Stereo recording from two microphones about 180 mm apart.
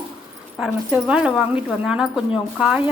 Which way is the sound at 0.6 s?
5° right (ahead or behind).